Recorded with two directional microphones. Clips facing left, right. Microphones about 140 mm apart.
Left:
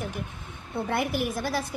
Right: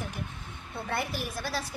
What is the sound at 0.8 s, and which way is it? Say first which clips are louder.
Speech: left 5 dB; 15° left (ahead or behind).